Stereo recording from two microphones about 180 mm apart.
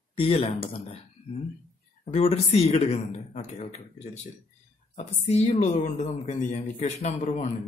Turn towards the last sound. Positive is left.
turn(degrees=40)  # may be behind; listen again after turning